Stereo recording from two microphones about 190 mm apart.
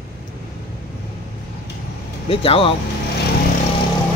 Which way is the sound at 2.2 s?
30° left (ahead or behind).